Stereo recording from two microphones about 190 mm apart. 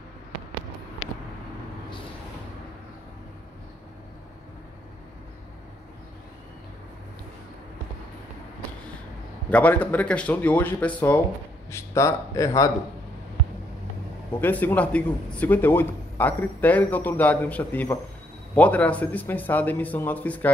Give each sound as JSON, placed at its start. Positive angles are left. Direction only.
{"t": 9.5, "sound": "a man's voice", "side_deg": 10}
{"t": 14.4, "sound": "a man's voice", "side_deg": 10}